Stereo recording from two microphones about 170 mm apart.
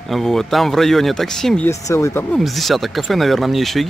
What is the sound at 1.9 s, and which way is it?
Speech, 20° left (ahead or behind).